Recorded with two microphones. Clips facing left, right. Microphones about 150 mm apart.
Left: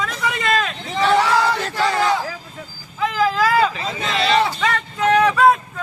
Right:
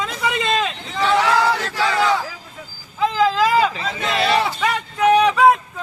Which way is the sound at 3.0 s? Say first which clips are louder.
Right 1 dB; 25° right (ahead or behind).